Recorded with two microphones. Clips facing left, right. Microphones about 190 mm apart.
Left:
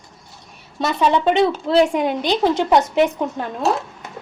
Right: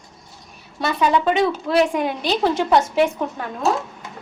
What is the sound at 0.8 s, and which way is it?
A woman's voice, 25° left (ahead or behind).